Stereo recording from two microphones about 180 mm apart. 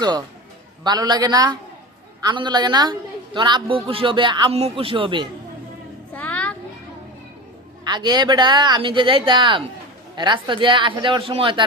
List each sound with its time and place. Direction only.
0.9 s a man's voice: 25° right (ahead or behind)
6.1 s a sound: 10° left (ahead or behind)
7.9 s a man's voice: 25° right (ahead or behind)